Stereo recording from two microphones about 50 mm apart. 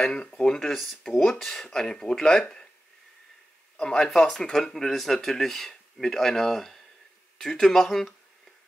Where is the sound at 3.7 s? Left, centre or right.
Centre.